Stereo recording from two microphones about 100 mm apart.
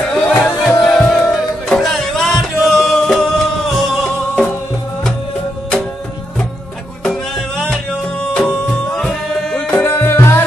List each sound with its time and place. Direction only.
0.1 s music: 15° left (ahead or behind)
0.6 s music: 5° left (ahead or behind)
7.1 s music: 5° left (ahead or behind)
9.8 s music: 25° left (ahead or behind)